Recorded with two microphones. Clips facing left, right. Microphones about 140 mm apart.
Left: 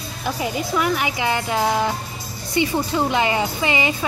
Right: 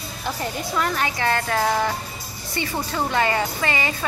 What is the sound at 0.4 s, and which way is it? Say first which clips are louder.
Speech: left 3 dB; 10° left (ahead or behind).